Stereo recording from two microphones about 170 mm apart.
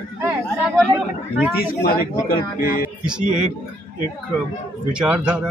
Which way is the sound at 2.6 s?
60° left (ahead or behind).